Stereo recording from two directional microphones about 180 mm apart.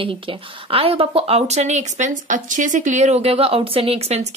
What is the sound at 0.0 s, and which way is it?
A woman's voice, 30° right (ahead or behind).